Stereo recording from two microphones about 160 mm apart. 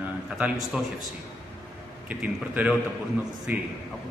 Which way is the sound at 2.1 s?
10° right (ahead or behind).